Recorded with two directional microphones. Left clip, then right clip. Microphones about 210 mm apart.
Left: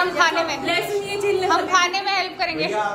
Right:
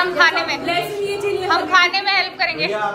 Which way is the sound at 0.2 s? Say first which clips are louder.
Right 6 dB; 15° left (ahead or behind).